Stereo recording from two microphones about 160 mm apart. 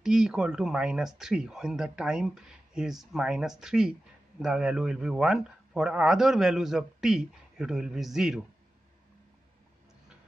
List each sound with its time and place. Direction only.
0.0 s a man's voice: 5° right (ahead or behind)